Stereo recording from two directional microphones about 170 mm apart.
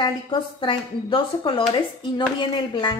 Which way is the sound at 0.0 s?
30° left (ahead or behind).